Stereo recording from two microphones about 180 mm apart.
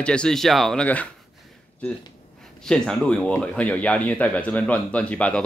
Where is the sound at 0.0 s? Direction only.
5° left (ahead or behind).